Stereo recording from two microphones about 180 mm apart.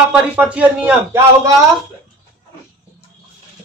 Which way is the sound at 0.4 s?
10° right (ahead or behind).